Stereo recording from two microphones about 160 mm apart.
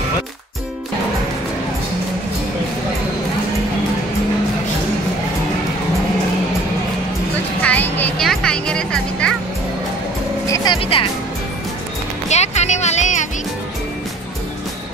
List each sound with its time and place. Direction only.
7.6 s a sound: 10° left (ahead or behind)
8.3 s music: 5° left (ahead or behind)
10.4 s music: 25° left (ahead or behind)
12.3 s music: 45° left (ahead or behind)